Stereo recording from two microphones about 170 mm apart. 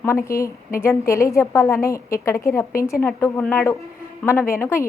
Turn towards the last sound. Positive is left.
turn(degrees=15)  # may be behind; listen again after turning